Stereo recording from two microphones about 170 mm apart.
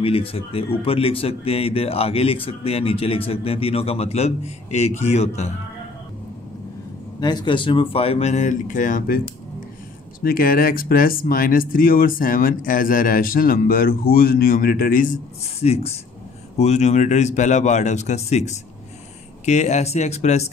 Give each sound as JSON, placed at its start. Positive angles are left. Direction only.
{"t": 0.0, "sound": "speech", "side_deg": 35}
{"t": 7.2, "sound": "speech", "side_deg": 25}
{"t": 10.2, "sound": "speech", "side_deg": 60}
{"t": 15.4, "sound": "a man's voice", "side_deg": 40}